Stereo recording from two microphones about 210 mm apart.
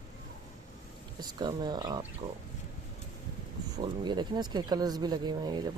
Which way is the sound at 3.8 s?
20° right (ahead or behind).